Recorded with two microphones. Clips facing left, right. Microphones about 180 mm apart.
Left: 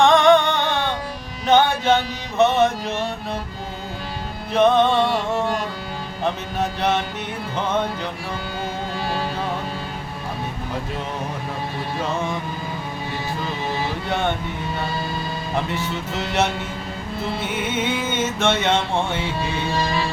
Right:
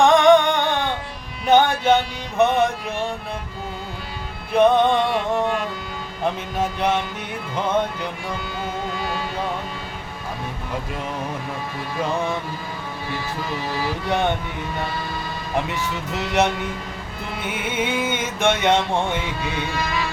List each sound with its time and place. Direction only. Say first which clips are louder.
0.0 s music: right 1 dB; 10° right (ahead or behind)
1.5 s a sound: right 1 dB; 10° right (ahead or behind)
2.4 s music: left 1 dB; 10° right (ahead or behind)
4.5 s music: even; 15° right (ahead or behind)
6.6 s music: even; 10° right (ahead or behind)
17.7 s music: right 2 dB; 10° right (ahead or behind)
19.4 s music: left 2 dB; 30° left (ahead or behind)